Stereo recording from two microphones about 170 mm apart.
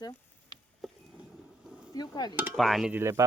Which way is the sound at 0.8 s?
Centre (ahead or behind).